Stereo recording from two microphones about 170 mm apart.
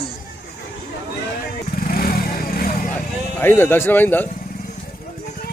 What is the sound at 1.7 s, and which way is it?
Vehicle, 60° left (ahead or behind).